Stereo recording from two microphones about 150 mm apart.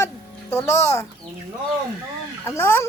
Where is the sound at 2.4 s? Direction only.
15° left (ahead or behind).